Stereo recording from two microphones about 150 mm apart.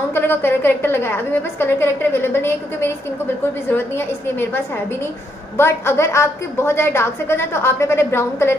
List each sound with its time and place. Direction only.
0.1 s a woman's voice: 15° left (ahead or behind)
5.6 s a woman's voice: 15° left (ahead or behind)